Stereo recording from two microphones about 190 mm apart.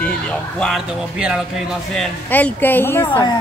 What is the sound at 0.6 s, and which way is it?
Speech, centre (ahead or behind).